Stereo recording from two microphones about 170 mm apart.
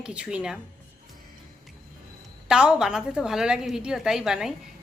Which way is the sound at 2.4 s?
5° right (ahead or behind).